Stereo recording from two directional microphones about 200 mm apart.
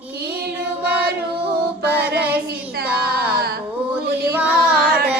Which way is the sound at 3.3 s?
50° right (ahead or behind).